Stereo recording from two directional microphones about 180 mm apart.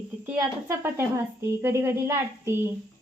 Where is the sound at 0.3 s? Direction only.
15° right (ahead or behind).